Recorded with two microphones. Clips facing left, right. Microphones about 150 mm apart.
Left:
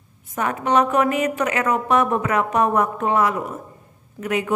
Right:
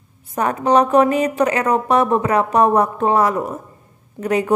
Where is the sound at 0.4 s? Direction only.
35° right (ahead or behind).